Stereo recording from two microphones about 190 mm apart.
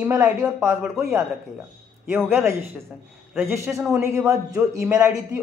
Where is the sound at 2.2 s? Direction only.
15° right (ahead or behind).